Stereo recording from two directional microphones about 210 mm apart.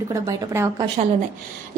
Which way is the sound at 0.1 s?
15° right (ahead or behind).